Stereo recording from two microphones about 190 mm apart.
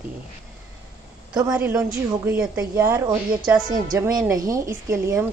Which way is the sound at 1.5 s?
10° right (ahead or behind).